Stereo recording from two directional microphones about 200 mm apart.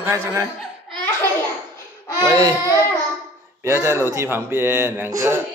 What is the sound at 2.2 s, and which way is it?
Speech, 20° right (ahead or behind).